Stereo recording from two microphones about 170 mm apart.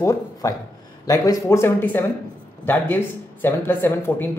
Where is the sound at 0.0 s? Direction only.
20° left (ahead or behind).